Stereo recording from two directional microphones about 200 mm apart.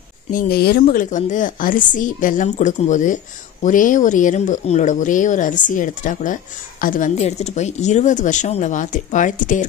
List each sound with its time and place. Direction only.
0.3 s speech: 45° left (ahead or behind)